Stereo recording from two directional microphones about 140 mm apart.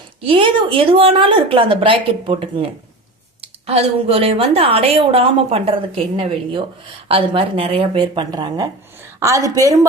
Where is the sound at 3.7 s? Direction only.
45° right (ahead or behind).